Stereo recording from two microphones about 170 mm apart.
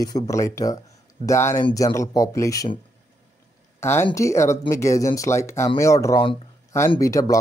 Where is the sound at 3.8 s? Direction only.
15° left (ahead or behind).